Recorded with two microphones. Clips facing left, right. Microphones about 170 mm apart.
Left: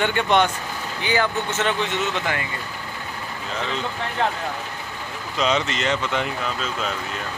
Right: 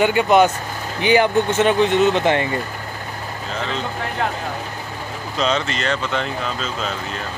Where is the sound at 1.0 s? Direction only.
15° right (ahead or behind).